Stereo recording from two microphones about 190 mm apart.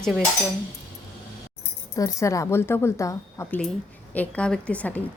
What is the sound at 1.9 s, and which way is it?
A woman's voice, 15° left (ahead or behind).